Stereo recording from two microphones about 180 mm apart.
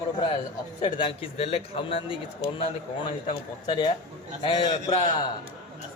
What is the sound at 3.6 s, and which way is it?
Speech, 25° left (ahead or behind).